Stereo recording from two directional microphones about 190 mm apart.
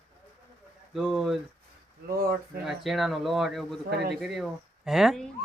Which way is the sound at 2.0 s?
50° right (ahead or behind).